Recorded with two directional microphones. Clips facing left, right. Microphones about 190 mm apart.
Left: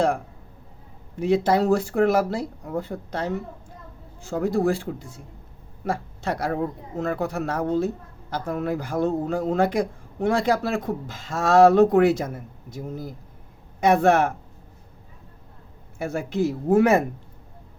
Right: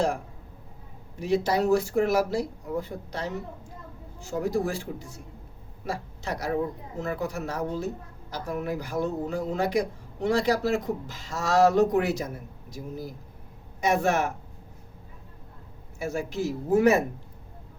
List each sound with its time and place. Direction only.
1.2 s a man's voice: 55° left (ahead or behind)
13.8 s speech: 60° left (ahead or behind)
16.0 s speech: 55° left (ahead or behind)